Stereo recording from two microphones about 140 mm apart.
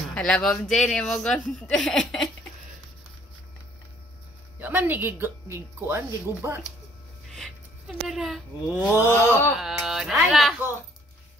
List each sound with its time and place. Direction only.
0.1 s speech: 5° left (ahead or behind)
4.6 s speech: 15° right (ahead or behind)
8.1 s speech: centre (ahead or behind)
8.8 s a sound: 20° left (ahead or behind)
9.6 s speech: 5° right (ahead or behind)